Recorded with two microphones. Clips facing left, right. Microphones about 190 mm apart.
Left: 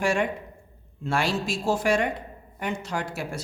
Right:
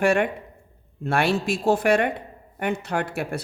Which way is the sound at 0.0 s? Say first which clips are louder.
Right 4 dB; 60° right (ahead or behind).